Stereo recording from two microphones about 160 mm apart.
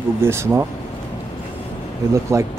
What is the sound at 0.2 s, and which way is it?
Speech, 15° right (ahead or behind).